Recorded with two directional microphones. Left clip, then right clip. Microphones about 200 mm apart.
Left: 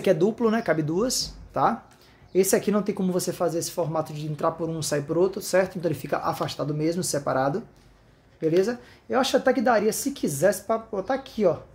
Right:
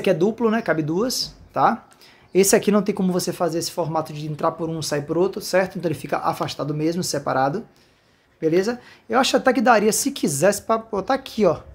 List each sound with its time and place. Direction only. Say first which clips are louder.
0.0 s speech: right 2 dB; 10° right (ahead or behind)
2.3 s a woman's voice: right 5 dB; 20° right (ahead or behind)